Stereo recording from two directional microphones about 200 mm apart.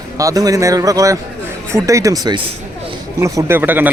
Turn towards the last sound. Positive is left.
turn(degrees=-10)  # may be behind; listen again after turning